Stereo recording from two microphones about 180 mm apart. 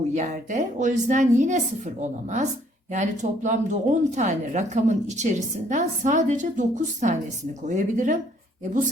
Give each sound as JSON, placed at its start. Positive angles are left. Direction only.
{"t": 0.1, "sound": "a woman's voice", "side_deg": -45}